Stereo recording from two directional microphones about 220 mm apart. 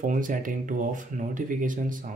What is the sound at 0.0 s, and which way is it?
Speech, 35° right (ahead or behind).